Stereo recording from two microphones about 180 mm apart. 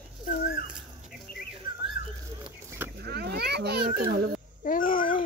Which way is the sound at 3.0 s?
65° right (ahead or behind).